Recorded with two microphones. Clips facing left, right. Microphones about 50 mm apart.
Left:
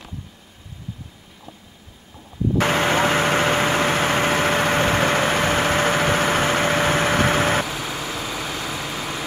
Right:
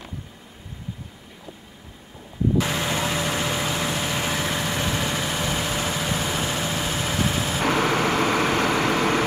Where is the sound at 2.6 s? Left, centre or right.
Left.